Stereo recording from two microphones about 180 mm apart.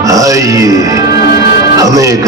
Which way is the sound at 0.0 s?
20° right (ahead or behind).